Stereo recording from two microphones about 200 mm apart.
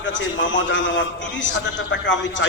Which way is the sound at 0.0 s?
70° left (ahead or behind).